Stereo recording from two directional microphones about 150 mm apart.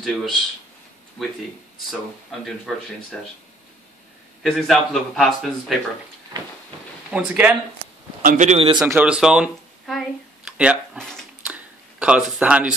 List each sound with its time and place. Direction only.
0.0 s speech: centre (ahead or behind)
2.4 s a man's voice: 5° left (ahead or behind)
4.4 s a man's voice: centre (ahead or behind)
7.1 s speech: 10° right (ahead or behind)
8.2 s a man's voice: 55° right (ahead or behind)
8.8 s speech: 10° right (ahead or behind)
11.4 s a sound: 10° right (ahead or behind)